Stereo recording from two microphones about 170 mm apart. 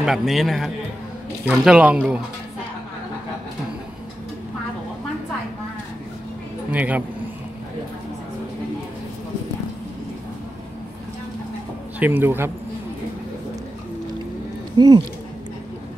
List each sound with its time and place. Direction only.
0.0 s speech: centre (ahead or behind)
6.7 s speech: 10° right (ahead or behind)
12.0 s speech: 10° right (ahead or behind)
14.8 s speech: 25° right (ahead or behind)